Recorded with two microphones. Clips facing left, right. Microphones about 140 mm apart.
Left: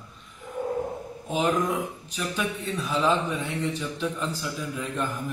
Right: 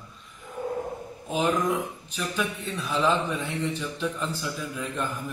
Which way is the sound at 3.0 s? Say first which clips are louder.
Even; centre (ahead or behind).